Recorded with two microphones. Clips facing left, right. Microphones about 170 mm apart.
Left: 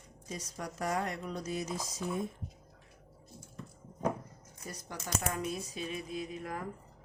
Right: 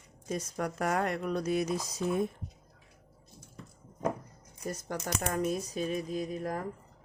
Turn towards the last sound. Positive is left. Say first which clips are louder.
# right 5 dB
turn(degrees=-40)  # may be behind; listen again after turning